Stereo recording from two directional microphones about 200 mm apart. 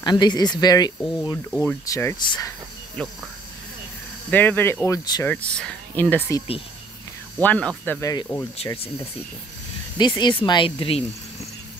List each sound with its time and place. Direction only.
0.0 s speech: 20° left (ahead or behind)
1.5 s speech: 5° left (ahead or behind)
4.3 s speech: 10° left (ahead or behind)
5.3 s speech: 5° left (ahead or behind)
8.6 s speech: 30° left (ahead or behind)
9.9 s speech: 20° left (ahead or behind)